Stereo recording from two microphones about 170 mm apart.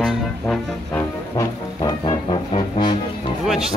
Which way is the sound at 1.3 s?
25° left (ahead or behind).